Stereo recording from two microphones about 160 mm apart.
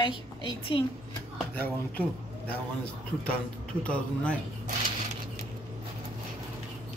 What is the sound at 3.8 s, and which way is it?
Speech, 5° left (ahead or behind).